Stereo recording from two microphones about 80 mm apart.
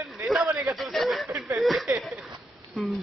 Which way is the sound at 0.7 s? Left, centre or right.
Centre.